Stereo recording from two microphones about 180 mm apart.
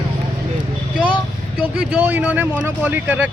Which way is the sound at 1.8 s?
10° right (ahead or behind).